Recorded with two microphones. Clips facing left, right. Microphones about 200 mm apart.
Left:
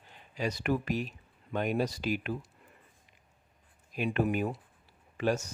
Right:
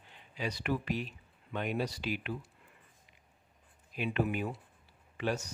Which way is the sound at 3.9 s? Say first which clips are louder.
Left 3 dB; 45° left (ahead or behind).